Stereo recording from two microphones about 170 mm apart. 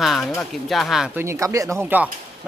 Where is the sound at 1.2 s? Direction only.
15° right (ahead or behind).